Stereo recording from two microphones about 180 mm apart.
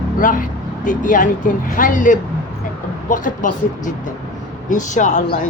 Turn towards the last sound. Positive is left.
turn(degrees=45)  # may be behind; listen again after turning